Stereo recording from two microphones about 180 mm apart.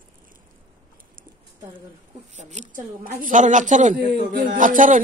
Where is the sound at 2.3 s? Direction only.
40° right (ahead or behind).